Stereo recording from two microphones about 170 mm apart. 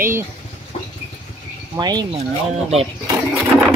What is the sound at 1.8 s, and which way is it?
Speech, 25° right (ahead or behind).